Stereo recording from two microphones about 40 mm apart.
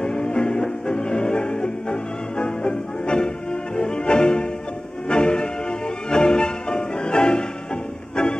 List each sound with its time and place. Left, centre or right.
0.0 s music: centre